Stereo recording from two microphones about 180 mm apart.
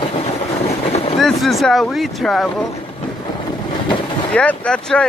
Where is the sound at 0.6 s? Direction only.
35° left (ahead or behind).